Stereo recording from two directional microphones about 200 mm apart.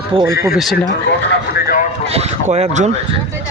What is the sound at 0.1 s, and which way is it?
Speech, 20° right (ahead or behind).